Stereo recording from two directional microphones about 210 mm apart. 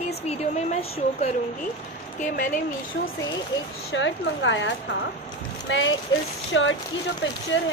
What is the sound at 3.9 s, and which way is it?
A woman's voice, 60° left (ahead or behind).